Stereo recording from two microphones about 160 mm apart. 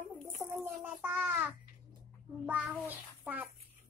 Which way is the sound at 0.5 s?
10° right (ahead or behind).